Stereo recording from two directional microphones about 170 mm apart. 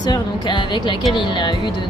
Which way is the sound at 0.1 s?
25° left (ahead or behind).